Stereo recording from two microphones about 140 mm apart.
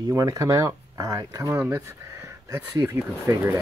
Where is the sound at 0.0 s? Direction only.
25° right (ahead or behind).